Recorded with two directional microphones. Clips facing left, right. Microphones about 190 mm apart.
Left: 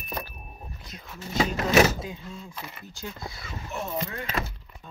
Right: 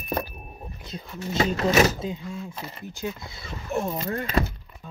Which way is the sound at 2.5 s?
35° right (ahead or behind).